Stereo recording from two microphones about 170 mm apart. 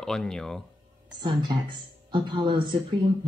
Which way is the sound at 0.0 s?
5° left (ahead or behind).